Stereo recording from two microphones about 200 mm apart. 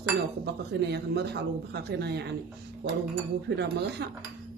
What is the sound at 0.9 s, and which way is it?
Speech, 55° right (ahead or behind).